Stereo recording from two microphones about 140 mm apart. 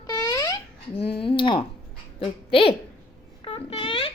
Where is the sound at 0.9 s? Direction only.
40° left (ahead or behind).